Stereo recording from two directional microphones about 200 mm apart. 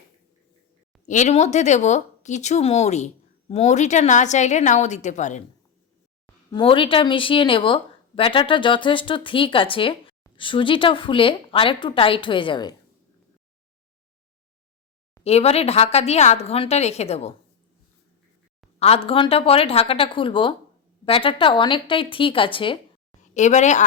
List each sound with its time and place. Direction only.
1.0 s speech: 35° left (ahead or behind)
6.2 s speech: 25° left (ahead or behind)
15.2 s speech: 30° left (ahead or behind)
18.8 s speech: 30° left (ahead or behind)
23.2 s a woman's voice: 35° left (ahead or behind)